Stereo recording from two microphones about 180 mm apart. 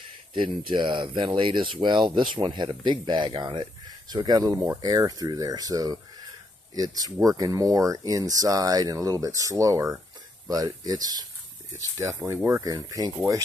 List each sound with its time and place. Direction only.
0.3 s speech: 25° right (ahead or behind)